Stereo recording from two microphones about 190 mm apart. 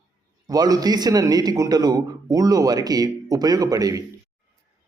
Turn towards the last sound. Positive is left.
turn(degrees=-20)  # may be behind; listen again after turning